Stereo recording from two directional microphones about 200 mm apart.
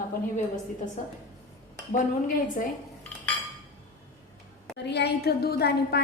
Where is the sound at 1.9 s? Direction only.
40° left (ahead or behind).